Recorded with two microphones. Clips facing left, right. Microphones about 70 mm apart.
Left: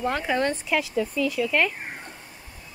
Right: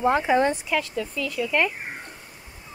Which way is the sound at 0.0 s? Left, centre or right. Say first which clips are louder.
Right 4 dB; centre.